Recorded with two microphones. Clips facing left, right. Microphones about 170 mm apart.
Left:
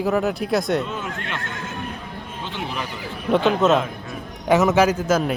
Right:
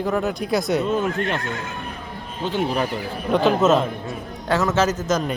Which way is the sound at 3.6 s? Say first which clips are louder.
Even; 5° right (ahead or behind).